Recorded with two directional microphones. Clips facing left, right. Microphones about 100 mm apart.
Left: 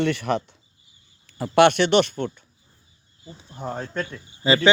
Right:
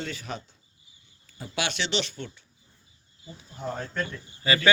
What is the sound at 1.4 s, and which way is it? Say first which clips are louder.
Speech: left 15 dB; 55° left (ahead or behind).